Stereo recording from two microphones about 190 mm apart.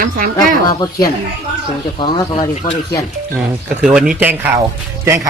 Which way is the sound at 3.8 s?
5° right (ahead or behind).